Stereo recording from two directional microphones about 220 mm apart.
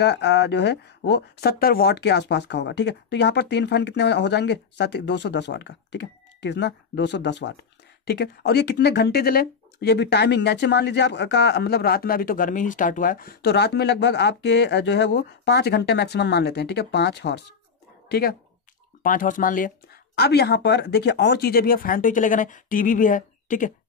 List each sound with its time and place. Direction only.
0.0 s speech: 50° left (ahead or behind)